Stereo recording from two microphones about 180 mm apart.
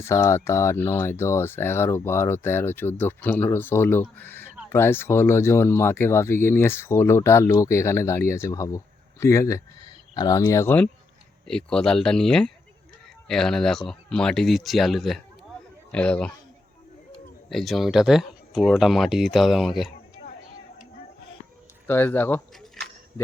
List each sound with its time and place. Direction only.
0.0 s speech: 15° left (ahead or behind)
17.5 s speech: centre (ahead or behind)
21.8 s speech: 10° left (ahead or behind)
22.8 s a sound: centre (ahead or behind)